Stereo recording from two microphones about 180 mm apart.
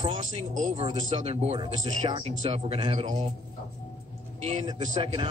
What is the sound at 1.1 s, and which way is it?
Speech, 35° right (ahead or behind).